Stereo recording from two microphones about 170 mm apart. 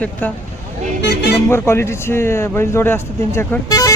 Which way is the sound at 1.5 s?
15° left (ahead or behind).